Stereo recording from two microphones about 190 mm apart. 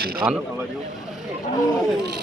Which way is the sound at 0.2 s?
20° right (ahead or behind).